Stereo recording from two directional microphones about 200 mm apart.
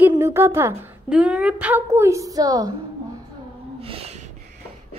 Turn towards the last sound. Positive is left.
turn(degrees=-30)  # may be behind; listen again after turning